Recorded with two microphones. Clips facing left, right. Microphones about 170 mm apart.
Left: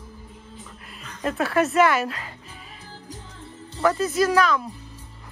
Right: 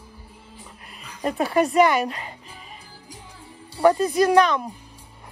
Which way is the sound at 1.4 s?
Centre (ahead or behind).